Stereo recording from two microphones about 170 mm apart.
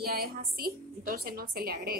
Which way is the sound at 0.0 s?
65° right (ahead or behind).